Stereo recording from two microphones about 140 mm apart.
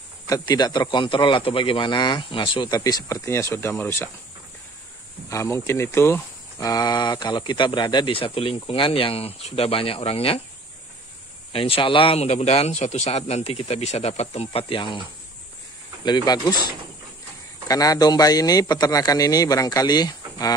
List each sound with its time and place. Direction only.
0.3 s speech: 30° left (ahead or behind)
5.3 s speech: 20° left (ahead or behind); by 10.4 s 45° left (ahead or behind)
11.5 s speech: 40° left (ahead or behind)
16.0 s a man's voice: 30° left (ahead or behind)